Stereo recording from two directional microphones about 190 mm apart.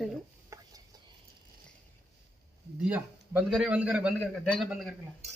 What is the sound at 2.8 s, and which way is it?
A man's voice, 10° right (ahead or behind).